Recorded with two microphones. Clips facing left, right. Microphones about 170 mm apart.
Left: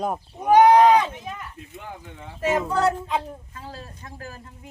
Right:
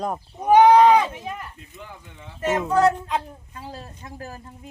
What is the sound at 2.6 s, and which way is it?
Speech, 5° left (ahead or behind).